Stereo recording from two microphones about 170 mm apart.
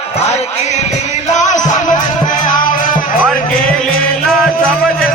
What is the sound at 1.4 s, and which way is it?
Music, 50° left (ahead or behind).